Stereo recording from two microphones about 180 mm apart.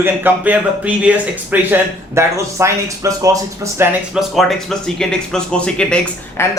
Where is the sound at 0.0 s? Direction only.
10° right (ahead or behind).